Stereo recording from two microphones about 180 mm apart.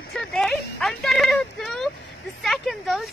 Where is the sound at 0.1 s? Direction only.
Centre (ahead or behind).